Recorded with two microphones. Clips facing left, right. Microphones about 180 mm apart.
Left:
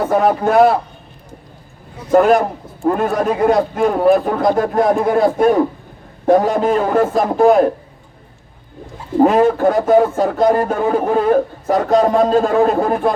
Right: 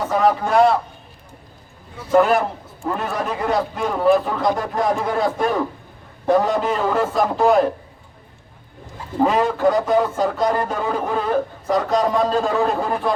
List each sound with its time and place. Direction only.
0.0 s speech: 55° left (ahead or behind)
2.0 s speech: 45° left (ahead or behind)
9.2 s speech: 50° left (ahead or behind)